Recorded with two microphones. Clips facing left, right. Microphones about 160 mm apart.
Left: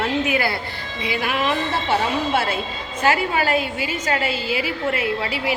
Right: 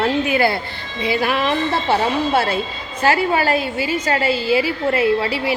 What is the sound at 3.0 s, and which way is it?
A woman's voice, 35° right (ahead or behind).